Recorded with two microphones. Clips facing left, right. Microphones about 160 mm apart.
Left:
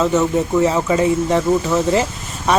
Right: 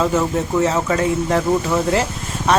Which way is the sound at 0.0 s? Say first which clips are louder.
Left 2 dB; centre (ahead or behind).